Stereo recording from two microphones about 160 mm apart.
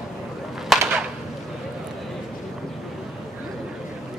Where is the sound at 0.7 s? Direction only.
Centre (ahead or behind).